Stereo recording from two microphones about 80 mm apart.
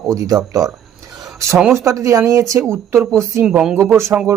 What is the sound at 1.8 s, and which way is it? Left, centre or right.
Speech, right.